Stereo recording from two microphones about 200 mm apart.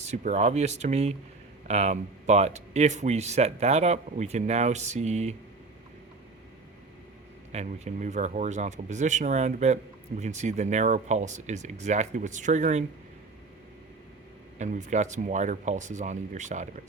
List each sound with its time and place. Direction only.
0.0 s speech: 35° right (ahead or behind)
7.5 s speech: 35° right (ahead or behind)
14.6 s speech: 35° right (ahead or behind)